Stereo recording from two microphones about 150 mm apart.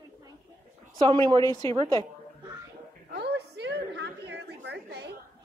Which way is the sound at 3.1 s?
90° right.